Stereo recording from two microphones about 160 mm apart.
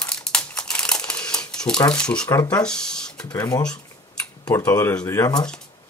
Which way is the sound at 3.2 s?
25° left (ahead or behind).